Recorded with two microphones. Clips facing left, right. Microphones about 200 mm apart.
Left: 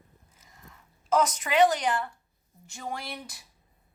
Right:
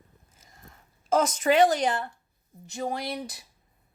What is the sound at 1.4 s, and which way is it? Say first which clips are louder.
Speech: right 2 dB; 45° right (ahead or behind).